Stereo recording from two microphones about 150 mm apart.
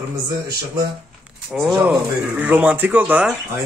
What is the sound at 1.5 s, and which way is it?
A man's voice, centre (ahead or behind).